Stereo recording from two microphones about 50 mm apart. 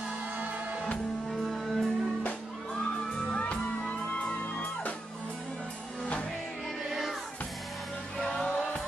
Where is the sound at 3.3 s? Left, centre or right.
Left.